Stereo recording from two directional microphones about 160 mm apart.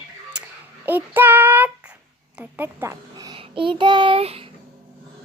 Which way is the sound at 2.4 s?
10° right (ahead or behind).